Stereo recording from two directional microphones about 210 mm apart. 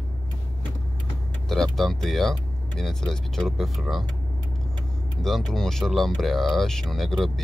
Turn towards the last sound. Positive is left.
turn(degrees=0)  # may be behind; listen again after turning